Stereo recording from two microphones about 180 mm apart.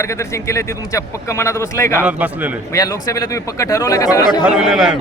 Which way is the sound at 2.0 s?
10° right (ahead or behind).